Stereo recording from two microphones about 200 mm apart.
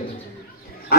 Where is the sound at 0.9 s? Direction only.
50° left (ahead or behind).